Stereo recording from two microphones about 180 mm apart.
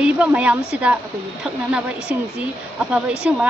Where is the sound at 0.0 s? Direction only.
5° right (ahead or behind).